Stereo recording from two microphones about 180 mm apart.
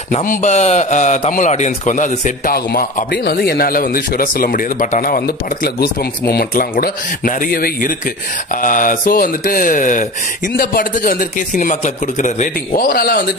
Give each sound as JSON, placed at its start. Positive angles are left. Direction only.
{"t": 0.1, "sound": "a man's voice", "side_deg": 45}